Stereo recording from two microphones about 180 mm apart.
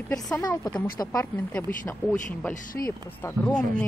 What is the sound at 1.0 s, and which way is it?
Speech, 15° left (ahead or behind).